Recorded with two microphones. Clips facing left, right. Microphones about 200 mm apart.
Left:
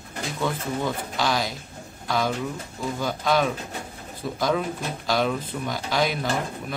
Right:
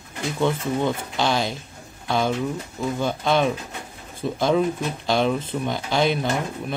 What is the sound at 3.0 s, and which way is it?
Speech, 25° right (ahead or behind).